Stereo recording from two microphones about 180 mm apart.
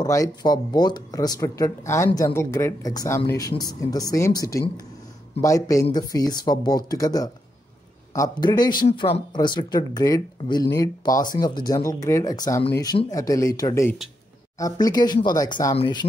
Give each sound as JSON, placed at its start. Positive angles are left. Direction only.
{"t": 0.0, "sound": "speech", "side_deg": 20}